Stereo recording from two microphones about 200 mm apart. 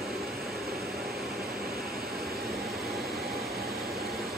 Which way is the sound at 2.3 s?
50° right (ahead or behind).